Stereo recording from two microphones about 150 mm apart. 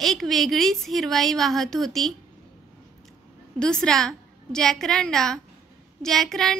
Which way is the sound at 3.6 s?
5° left (ahead or behind).